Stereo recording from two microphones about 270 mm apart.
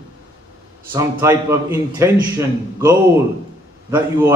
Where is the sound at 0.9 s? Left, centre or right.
Centre.